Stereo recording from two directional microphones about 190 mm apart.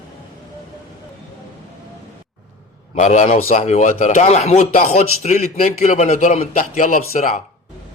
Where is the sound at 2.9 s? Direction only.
40° left (ahead or behind).